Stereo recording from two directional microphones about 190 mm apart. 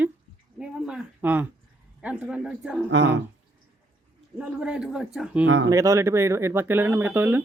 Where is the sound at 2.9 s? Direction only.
75° right (ahead or behind).